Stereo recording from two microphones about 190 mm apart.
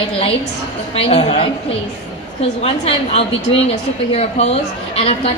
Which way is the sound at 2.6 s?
30° left (ahead or behind).